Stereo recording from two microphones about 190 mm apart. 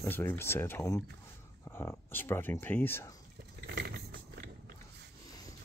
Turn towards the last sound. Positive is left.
turn(degrees=-60)  # may be behind; listen again after turning